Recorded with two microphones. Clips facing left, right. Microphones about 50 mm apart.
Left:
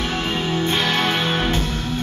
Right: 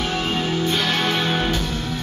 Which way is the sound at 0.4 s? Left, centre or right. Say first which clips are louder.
Left 2 dB; left.